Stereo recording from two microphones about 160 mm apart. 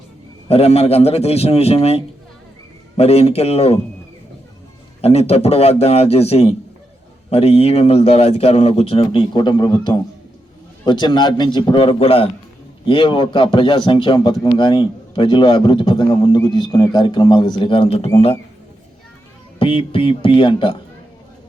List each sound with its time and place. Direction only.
0.4 s a man's voice: 40° left (ahead or behind)
4.9 s a man's voice: 40° left (ahead or behind)
19.5 s a man's voice: 35° left (ahead or behind)